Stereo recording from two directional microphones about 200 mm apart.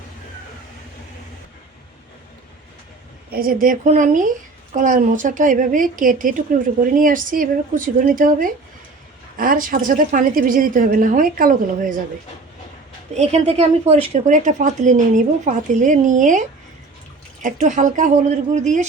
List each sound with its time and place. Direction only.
3.3 s a woman's voice: 45° right (ahead or behind)
13.1 s a woman's voice: 35° right (ahead or behind)
17.4 s a woman's voice: 40° right (ahead or behind)